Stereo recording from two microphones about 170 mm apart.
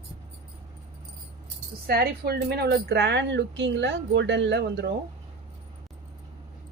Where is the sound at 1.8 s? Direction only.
65° right (ahead or behind).